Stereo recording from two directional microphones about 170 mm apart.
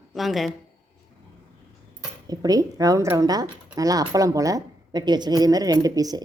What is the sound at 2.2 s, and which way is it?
A woman's voice, 20° right (ahead or behind).